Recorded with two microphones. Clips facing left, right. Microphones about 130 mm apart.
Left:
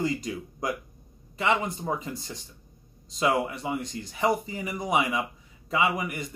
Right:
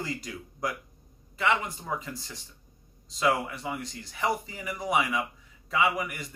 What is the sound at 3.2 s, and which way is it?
Speech, 25° left (ahead or behind).